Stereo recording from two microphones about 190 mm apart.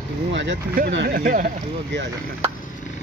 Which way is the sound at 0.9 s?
50° right (ahead or behind).